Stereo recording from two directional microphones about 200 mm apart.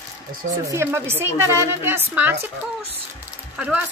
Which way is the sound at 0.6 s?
15° right (ahead or behind).